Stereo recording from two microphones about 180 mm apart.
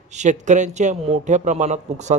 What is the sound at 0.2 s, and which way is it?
A man's voice, 40° right (ahead or behind).